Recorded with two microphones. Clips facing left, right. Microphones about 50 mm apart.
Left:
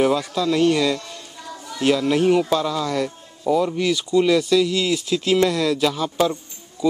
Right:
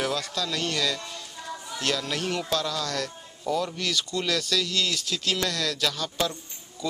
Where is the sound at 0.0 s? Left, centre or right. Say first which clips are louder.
Left 9 dB; centre.